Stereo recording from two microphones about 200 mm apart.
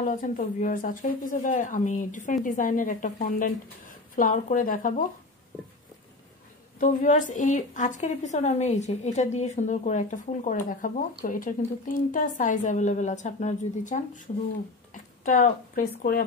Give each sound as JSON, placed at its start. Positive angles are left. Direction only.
{"t": 0.0, "sound": "speech", "side_deg": 40}
{"t": 6.8, "sound": "speech", "side_deg": 40}